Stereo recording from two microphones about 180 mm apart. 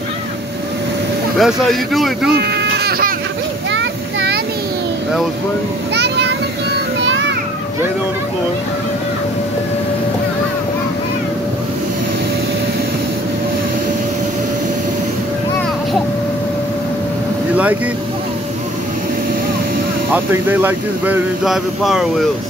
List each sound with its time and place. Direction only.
1.4 s a man's voice: centre (ahead or behind)
2.3 s baby cry: 65° right (ahead or behind)
3.7 s a sound: 90° right
5.9 s children playing: 70° right (ahead or behind)
7.1 s children playing: 90° right
20.1 s speech: 10° right (ahead or behind)